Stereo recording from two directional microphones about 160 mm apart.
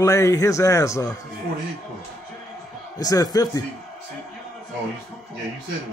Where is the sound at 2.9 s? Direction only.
25° left (ahead or behind).